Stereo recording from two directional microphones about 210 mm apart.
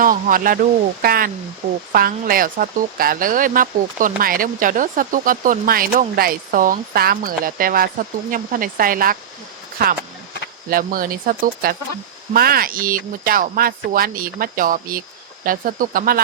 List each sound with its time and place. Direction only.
0.0 s speech: 40° right (ahead or behind)